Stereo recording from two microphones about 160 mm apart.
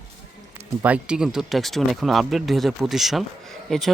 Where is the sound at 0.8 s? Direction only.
5° right (ahead or behind).